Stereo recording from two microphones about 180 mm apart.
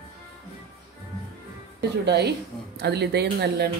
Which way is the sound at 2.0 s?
70° right (ahead or behind).